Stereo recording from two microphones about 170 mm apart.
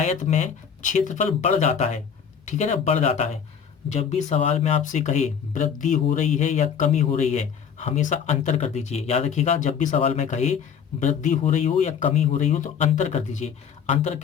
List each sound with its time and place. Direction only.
0.0 s speech: 40° left (ahead or behind)